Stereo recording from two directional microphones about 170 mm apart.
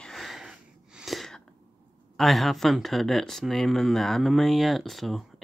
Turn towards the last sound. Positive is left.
turn(degrees=0)  # may be behind; listen again after turning